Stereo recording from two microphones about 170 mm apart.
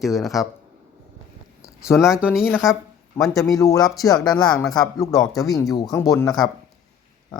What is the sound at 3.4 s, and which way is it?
Speech, 20° left (ahead or behind).